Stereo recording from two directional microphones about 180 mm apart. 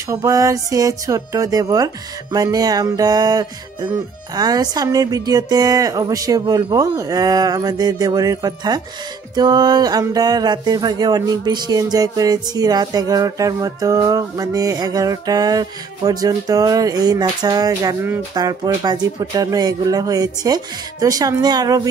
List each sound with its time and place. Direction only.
0.1 s speech: 20° right (ahead or behind)